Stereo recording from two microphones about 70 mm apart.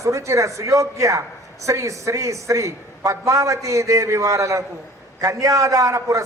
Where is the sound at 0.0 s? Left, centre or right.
Right.